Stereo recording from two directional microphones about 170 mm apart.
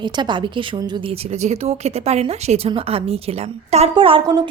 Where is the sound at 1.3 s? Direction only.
40° right (ahead or behind).